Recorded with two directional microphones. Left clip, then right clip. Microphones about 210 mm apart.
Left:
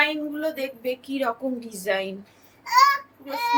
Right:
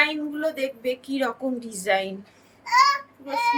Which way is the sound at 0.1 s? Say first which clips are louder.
Right 1 dB; 15° right (ahead or behind).